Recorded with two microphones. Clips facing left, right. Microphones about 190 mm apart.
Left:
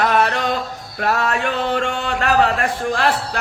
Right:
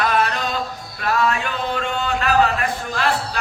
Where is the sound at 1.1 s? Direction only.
70° left (ahead or behind).